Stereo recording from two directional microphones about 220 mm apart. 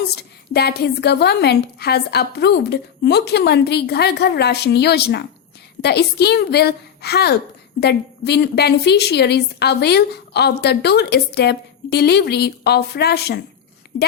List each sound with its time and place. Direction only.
0.0 s a woman's voice: 45° left (ahead or behind)